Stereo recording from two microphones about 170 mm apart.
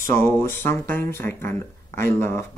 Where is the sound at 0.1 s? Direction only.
15° left (ahead or behind).